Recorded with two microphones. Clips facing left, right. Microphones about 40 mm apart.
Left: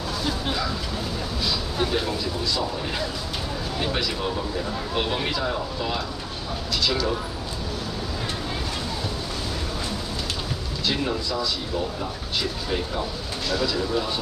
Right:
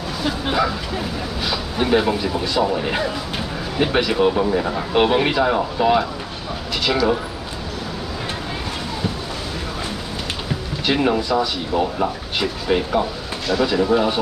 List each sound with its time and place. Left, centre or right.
0.2 s speech: right
6.7 s a sound: right
10.9 s speech: right